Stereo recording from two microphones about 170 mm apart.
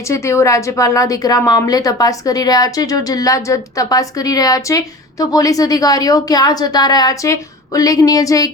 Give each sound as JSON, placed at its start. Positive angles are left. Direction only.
{"t": 0.1, "sound": "a woman's voice", "side_deg": 15}